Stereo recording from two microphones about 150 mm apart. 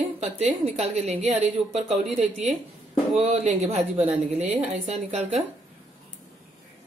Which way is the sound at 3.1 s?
45° right (ahead or behind).